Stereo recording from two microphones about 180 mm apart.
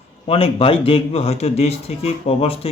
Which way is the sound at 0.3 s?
30° left (ahead or behind).